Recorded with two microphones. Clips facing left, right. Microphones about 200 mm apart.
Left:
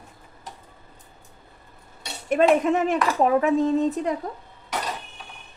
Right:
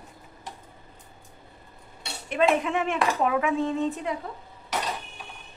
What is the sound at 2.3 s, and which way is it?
Speech, 45° left (ahead or behind).